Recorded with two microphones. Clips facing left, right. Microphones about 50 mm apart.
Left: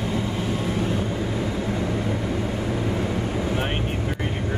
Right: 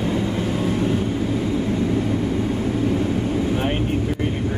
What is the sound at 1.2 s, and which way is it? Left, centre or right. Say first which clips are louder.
Vehicle: right 4 dB; left.